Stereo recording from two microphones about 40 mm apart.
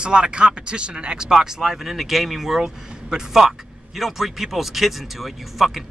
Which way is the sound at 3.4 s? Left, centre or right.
Centre.